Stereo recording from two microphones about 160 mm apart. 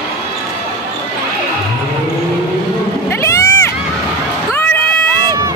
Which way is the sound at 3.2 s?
20° left (ahead or behind).